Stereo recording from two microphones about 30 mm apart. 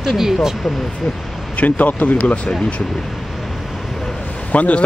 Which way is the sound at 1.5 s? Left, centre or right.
Left.